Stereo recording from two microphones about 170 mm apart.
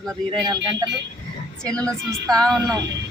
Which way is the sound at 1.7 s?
5° left (ahead or behind).